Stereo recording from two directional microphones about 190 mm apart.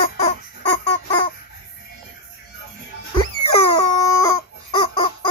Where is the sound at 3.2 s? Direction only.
30° left (ahead or behind).